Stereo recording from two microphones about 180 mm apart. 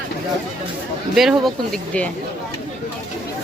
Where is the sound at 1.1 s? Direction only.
Centre (ahead or behind).